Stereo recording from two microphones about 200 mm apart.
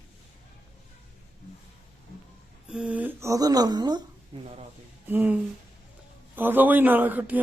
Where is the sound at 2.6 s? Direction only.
5° right (ahead or behind); by 4.0 s 20° right (ahead or behind).